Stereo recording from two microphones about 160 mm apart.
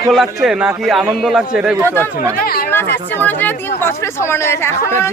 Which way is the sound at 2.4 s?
70° left (ahead or behind).